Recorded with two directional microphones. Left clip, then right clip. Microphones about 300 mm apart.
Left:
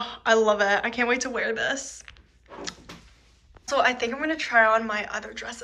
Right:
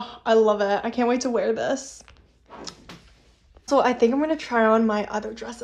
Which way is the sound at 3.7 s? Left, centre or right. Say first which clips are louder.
Right 4 dB; right.